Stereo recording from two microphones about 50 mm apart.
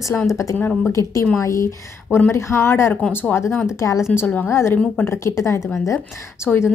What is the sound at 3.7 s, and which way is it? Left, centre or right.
Speech, left.